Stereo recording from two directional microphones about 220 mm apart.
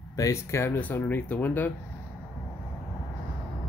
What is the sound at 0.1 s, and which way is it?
Speech, 15° left (ahead or behind).